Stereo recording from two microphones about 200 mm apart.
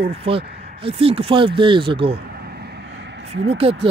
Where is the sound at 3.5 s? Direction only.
30° right (ahead or behind).